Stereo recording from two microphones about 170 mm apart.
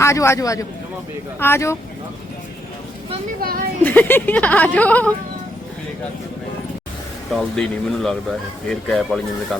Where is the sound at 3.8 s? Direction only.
10° left (ahead or behind).